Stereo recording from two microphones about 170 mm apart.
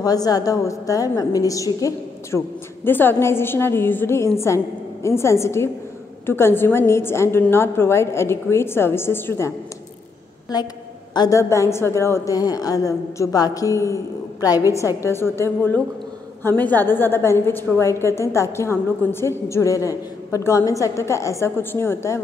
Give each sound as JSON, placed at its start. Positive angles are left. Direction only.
{"t": 0.0, "sound": "a woman's voice", "side_deg": 20}
{"t": 10.5, "sound": "a woman's voice", "side_deg": 25}